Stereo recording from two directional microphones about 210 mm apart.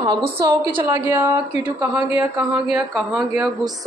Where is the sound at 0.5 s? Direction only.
25° right (ahead or behind).